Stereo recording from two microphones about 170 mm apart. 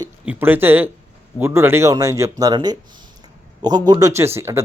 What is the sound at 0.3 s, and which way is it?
Speech, 10° right (ahead or behind).